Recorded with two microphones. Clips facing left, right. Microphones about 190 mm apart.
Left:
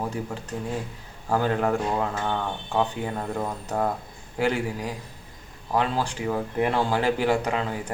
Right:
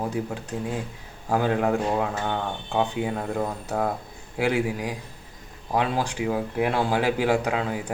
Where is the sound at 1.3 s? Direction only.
10° right (ahead or behind).